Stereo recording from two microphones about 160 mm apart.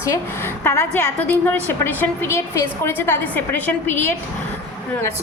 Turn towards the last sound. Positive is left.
turn(degrees=15)  # may be behind; listen again after turning